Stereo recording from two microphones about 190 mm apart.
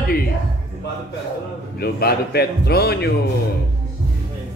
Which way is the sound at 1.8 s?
55° left (ahead or behind).